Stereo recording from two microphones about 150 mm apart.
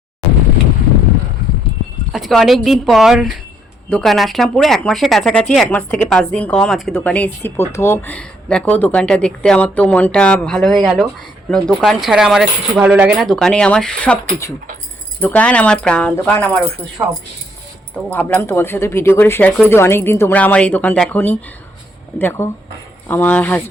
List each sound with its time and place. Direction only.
2.1 s speech: centre (ahead or behind)
15.2 s speech: 10° left (ahead or behind)
17.0 s speech: 20° right (ahead or behind)
18.1 s speech: 10° left (ahead or behind)